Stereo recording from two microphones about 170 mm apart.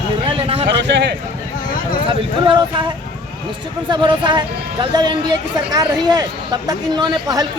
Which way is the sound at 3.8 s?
25° right (ahead or behind).